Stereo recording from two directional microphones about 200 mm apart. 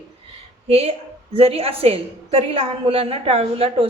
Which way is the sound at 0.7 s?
30° right (ahead or behind).